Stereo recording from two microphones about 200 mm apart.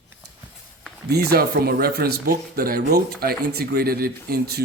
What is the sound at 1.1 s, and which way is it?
Speech, 50° right (ahead or behind).